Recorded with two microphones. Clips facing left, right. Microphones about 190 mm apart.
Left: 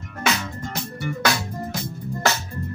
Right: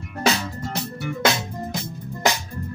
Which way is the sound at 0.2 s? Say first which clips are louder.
Right 3 dB; 35° right (ahead or behind).